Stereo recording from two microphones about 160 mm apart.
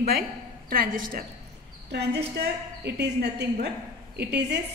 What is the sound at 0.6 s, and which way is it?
Speech, 65° right (ahead or behind).